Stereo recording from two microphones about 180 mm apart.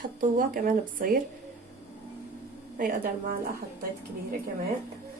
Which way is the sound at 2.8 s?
50° right (ahead or behind).